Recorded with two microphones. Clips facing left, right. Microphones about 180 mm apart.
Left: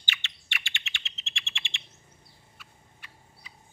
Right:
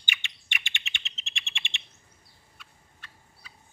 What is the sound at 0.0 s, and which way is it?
Bird, 15° right (ahead or behind).